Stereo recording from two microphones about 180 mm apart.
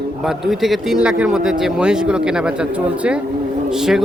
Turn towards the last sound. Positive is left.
turn(degrees=0)  # may be behind; listen again after turning